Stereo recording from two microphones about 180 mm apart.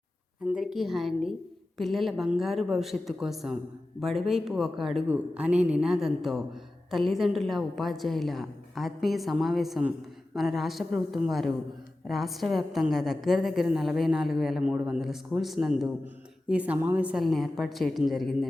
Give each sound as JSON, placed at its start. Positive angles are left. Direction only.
{"t": 0.4, "sound": "a man's voice", "side_deg": -5}